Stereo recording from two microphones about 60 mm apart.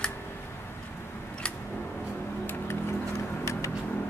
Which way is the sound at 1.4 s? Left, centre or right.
Centre.